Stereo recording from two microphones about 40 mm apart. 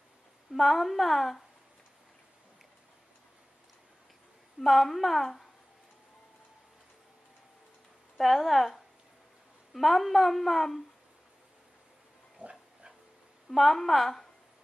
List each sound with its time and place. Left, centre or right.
0.5 s a woman's voice: centre
4.6 s a woman's voice: centre
8.2 s a woman's voice: centre
12.4 s pig: right
13.5 s a woman's voice: centre